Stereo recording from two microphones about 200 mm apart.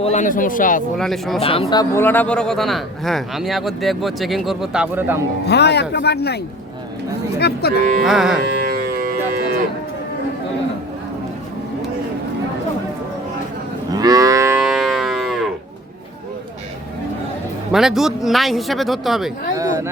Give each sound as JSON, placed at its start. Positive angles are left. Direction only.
{"t": 0.0, "sound": "speech", "side_deg": 35}
{"t": 0.9, "sound": "speech", "side_deg": 0}
{"t": 1.4, "sound": "speech", "side_deg": 30}
{"t": 5.5, "sound": "speech", "side_deg": 55}
{"t": 8.0, "sound": "speech", "side_deg": 0}
{"t": 8.6, "sound": "civil defense siren", "side_deg": -50}
{"t": 13.9, "sound": "livestock", "side_deg": -20}
{"t": 14.6, "sound": "music", "side_deg": 0}
{"t": 17.7, "sound": "speech", "side_deg": 0}
{"t": 19.5, "sound": "chatter", "side_deg": -15}